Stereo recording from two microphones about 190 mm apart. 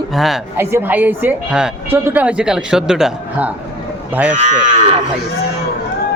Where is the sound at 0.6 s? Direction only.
10° right (ahead or behind).